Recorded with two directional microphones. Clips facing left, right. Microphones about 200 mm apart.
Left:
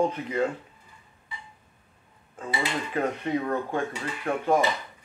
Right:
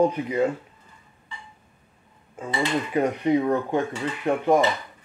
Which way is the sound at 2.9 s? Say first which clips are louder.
Right 6 dB; 15° right (ahead or behind).